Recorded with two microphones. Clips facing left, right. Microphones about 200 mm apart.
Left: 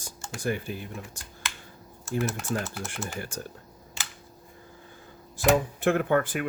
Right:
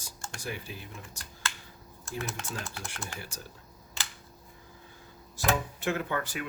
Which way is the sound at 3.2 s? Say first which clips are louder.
Left 8 dB; 50° left (ahead or behind).